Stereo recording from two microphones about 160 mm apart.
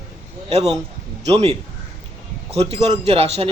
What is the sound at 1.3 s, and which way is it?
Speech, 40° right (ahead or behind).